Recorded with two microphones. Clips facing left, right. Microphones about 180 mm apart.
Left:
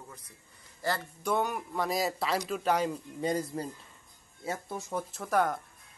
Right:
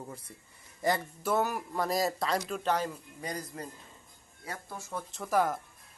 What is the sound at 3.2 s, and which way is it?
Speech, 25° left (ahead or behind).